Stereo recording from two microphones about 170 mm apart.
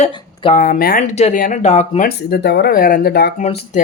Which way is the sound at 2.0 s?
70° left (ahead or behind).